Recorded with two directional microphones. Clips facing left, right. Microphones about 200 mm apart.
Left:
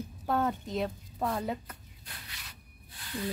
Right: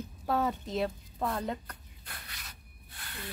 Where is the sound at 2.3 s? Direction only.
50° right (ahead or behind).